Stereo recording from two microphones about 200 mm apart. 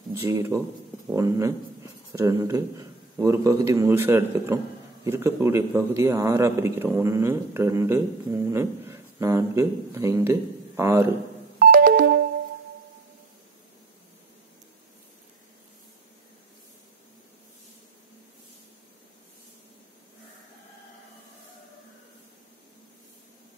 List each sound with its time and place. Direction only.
0.3 s a man's voice: 15° right (ahead or behind)
11.6 s ringtone: 45° right (ahead or behind)